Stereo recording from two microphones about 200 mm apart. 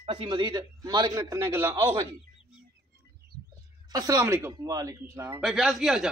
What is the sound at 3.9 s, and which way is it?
Speech, 15° right (ahead or behind).